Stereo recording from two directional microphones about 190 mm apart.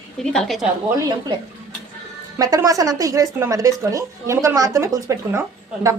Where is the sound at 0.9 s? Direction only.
20° right (ahead or behind).